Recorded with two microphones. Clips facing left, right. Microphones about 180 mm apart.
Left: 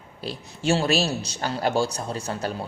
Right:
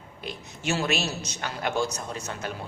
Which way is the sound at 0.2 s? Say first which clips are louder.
Left 5 dB; 35° left (ahead or behind).